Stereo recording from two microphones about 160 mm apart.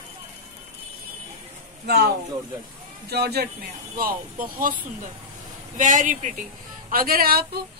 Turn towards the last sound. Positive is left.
turn(degrees=-70)  # may be behind; listen again after turning